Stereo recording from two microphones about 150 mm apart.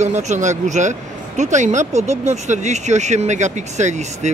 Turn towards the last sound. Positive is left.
turn(degrees=-50)  # may be behind; listen again after turning